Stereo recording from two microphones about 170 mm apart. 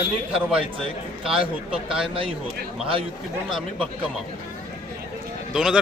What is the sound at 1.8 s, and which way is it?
Speech, 5° right (ahead or behind).